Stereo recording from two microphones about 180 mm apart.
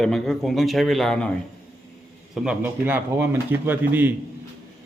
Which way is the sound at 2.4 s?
10° right (ahead or behind).